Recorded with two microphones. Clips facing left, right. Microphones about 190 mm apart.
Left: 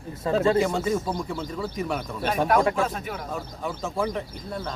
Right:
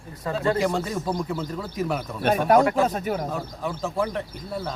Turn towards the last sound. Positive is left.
turn(degrees=-5)  # may be behind; listen again after turning